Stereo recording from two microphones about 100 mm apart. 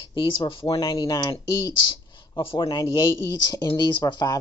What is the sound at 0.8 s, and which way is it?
Speech, 40° left (ahead or behind).